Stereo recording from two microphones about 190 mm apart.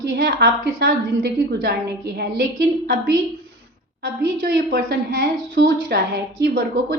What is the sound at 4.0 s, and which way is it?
A woman's voice, 55° right (ahead or behind).